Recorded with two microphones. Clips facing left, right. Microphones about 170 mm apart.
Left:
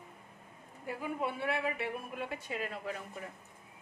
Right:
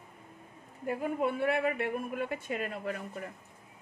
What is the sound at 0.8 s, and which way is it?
Speech, 50° right (ahead or behind).